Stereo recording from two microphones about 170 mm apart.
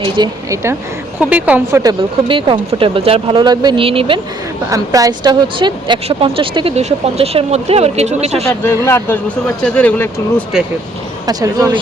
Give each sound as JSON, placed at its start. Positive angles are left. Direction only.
{"t": 0.0, "sound": "speech", "side_deg": -20}
{"t": 1.8, "sound": "speech", "side_deg": -25}
{"t": 4.7, "sound": "speech", "side_deg": -20}
{"t": 8.4, "sound": "speech", "side_deg": 15}
{"t": 11.3, "sound": "speech", "side_deg": -20}